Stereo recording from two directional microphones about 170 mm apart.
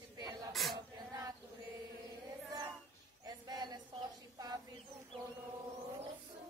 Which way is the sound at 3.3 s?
25° right (ahead or behind).